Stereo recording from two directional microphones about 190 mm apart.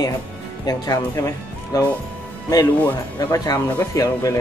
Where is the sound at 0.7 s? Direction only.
20° left (ahead or behind).